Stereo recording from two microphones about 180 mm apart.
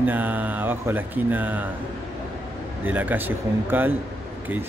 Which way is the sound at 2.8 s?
10° right (ahead or behind).